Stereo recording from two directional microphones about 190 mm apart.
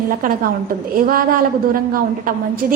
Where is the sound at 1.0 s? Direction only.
50° right (ahead or behind).